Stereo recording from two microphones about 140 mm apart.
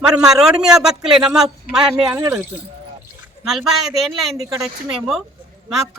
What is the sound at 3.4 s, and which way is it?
A man's voice, centre (ahead or behind).